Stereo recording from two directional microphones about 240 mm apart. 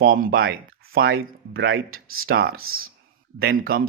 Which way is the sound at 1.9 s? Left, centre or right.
Right.